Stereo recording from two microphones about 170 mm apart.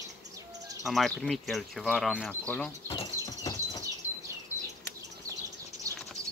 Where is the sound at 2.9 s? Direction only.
20° left (ahead or behind).